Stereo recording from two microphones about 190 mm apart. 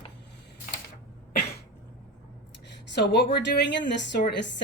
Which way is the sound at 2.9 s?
65° left (ahead or behind).